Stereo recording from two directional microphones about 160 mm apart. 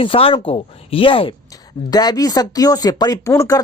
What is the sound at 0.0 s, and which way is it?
Speech, 35° left (ahead or behind).